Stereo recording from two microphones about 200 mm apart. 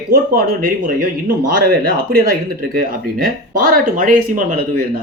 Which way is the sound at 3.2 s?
45° right (ahead or behind).